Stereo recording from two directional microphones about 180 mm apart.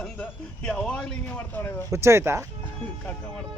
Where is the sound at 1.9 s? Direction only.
15° right (ahead or behind).